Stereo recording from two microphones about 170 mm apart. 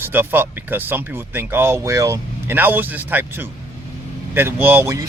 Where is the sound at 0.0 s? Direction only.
10° right (ahead or behind).